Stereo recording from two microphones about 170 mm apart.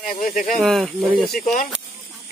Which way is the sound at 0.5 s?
Centre (ahead or behind).